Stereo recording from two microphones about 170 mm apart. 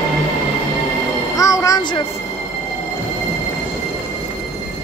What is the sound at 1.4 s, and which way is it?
Music, 20° left (ahead or behind).